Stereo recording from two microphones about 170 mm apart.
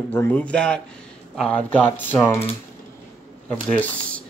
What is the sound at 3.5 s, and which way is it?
Speech, 10° left (ahead or behind).